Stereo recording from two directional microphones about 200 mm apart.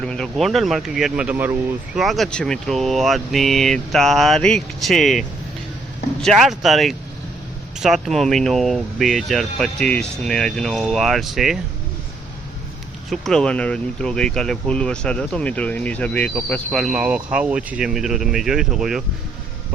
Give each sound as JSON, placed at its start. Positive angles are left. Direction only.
{"t": 0.0, "sound": "speech", "side_deg": 5}
{"t": 6.2, "sound": "speech", "side_deg": 0}
{"t": 13.1, "sound": "speech", "side_deg": 0}